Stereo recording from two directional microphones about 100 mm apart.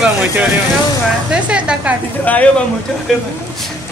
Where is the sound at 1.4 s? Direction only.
10° right (ahead or behind).